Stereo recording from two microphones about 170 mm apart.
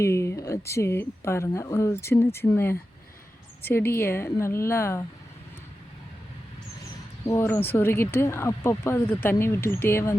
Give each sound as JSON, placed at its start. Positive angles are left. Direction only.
{"t": 0.0, "sound": "speech", "side_deg": 15}
{"t": 7.3, "sound": "speech", "side_deg": 15}